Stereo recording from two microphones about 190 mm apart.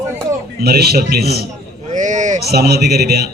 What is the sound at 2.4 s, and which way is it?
Speech, 55° right (ahead or behind).